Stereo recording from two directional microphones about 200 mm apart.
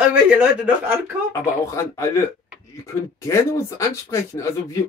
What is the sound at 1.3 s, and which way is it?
A man's voice, 15° left (ahead or behind).